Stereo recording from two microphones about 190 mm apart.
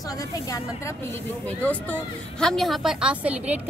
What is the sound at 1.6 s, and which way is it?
A woman's voice, 10° left (ahead or behind).